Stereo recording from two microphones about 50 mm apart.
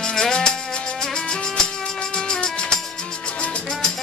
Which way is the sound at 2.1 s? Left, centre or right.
Centre.